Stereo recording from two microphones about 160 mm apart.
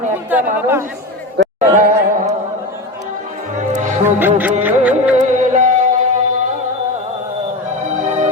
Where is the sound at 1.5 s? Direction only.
50° right (ahead or behind).